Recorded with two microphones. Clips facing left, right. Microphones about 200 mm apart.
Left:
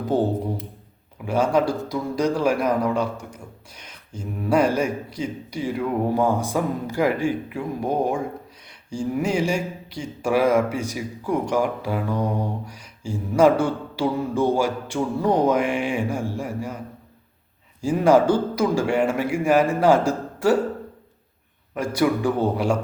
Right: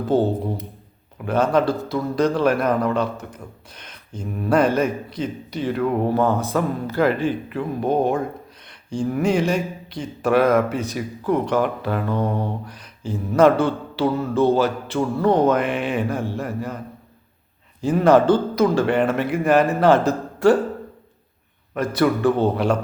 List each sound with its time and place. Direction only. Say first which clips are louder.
0.0 s speech: right 2 dB; 15° left (ahead or behind)
21.8 s speech: right 2 dB; 10° left (ahead or behind)